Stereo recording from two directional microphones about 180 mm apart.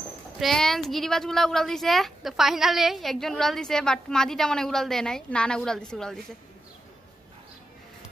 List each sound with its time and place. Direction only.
0.4 s a woman's voice: centre (ahead or behind)